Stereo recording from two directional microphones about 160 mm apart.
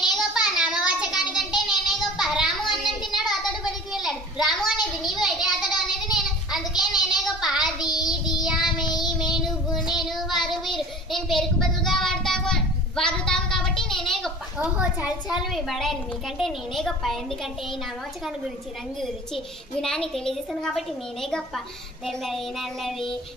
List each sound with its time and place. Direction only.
0.0 s a sound: 5° right (ahead or behind)
8.7 s child singing: 25° left (ahead or behind)
9.2 s child singing: centre (ahead or behind)
18.9 s a woman's voice: 35° left (ahead or behind)
19.8 s a woman's voice: 5° left (ahead or behind)